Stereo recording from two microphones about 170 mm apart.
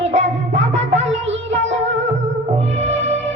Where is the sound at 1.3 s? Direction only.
90° right.